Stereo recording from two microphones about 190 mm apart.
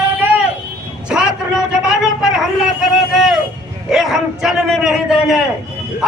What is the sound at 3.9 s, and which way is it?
A man's voice, centre (ahead or behind).